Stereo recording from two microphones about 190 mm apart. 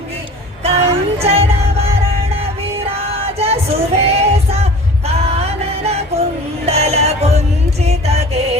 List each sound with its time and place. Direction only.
0.6 s music: 35° right (ahead or behind)
3.3 s music: 30° right (ahead or behind)